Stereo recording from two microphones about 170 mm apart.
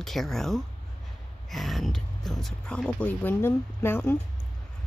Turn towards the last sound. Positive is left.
turn(degrees=10)  # may be behind; listen again after turning